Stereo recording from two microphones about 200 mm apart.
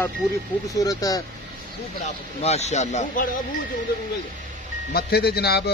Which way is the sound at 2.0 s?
35° left (ahead or behind).